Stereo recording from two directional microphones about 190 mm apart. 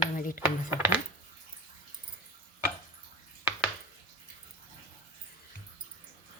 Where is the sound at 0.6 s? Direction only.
10° right (ahead or behind).